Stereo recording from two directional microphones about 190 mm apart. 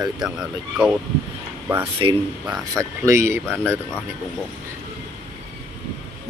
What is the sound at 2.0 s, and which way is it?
Speech, 25° right (ahead or behind).